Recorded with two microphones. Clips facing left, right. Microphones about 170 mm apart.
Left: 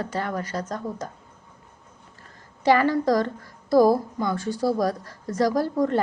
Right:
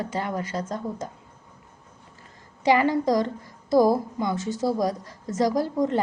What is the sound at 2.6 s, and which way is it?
A woman's voice, 20° right (ahead or behind).